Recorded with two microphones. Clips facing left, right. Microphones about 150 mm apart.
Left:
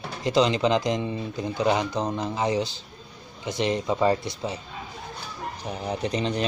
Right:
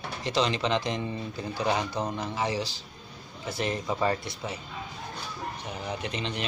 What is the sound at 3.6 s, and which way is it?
Speech, 20° left (ahead or behind).